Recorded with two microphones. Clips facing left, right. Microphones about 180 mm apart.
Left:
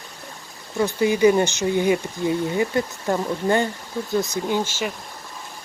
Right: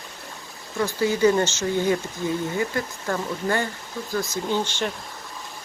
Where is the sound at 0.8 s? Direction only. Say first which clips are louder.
Left 3 dB; 20° left (ahead or behind).